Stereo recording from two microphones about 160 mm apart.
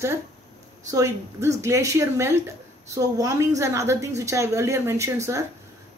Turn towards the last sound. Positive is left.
turn(degrees=-20)  # may be behind; listen again after turning